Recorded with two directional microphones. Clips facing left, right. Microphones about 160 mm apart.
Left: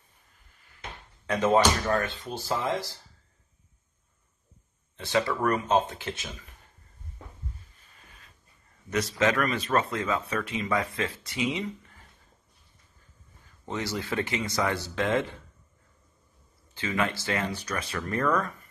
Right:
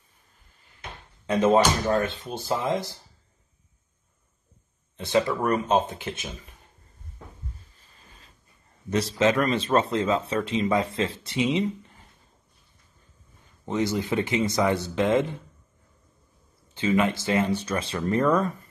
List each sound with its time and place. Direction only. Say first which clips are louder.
1.2 s speech: right 3 dB; 20° right (ahead or behind)
4.9 s speech: right 3 dB; 20° right (ahead or behind)
8.9 s speech: right 3 dB; 25° right (ahead or behind)
13.7 s speech: right 6 dB; 20° right (ahead or behind)
16.7 s speech: right 6 dB; 20° right (ahead or behind)